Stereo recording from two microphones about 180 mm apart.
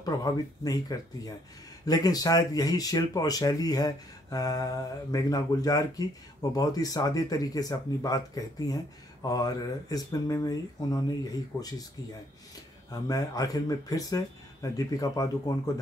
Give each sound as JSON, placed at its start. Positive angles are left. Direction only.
{"t": 0.0, "sound": "speech", "side_deg": 20}
{"t": 12.9, "sound": "speech", "side_deg": 20}